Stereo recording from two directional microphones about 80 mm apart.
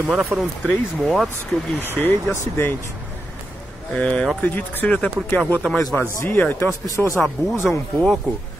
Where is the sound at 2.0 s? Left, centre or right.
Left.